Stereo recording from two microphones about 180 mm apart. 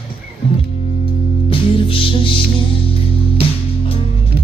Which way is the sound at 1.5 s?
30° left (ahead or behind).